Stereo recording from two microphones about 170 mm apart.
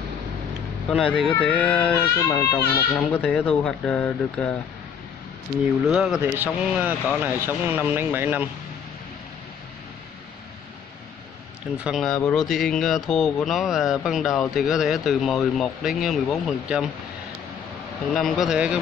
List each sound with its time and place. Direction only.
0.8 s speech: centre (ahead or behind)
5.9 s speech: centre (ahead or behind)
11.8 s speech: centre (ahead or behind)
18.1 s speech: centre (ahead or behind)